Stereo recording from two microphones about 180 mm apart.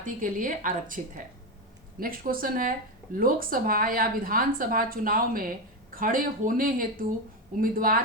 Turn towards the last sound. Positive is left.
turn(degrees=-50)  # may be behind; listen again after turning